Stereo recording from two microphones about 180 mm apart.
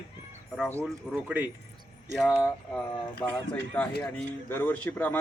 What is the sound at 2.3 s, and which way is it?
Speech, 15° left (ahead or behind).